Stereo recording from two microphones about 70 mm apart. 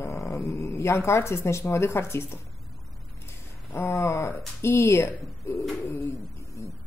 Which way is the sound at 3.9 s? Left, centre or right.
Left.